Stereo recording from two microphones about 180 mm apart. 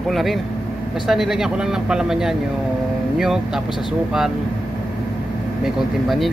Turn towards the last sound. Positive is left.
turn(degrees=0)  # may be behind; listen again after turning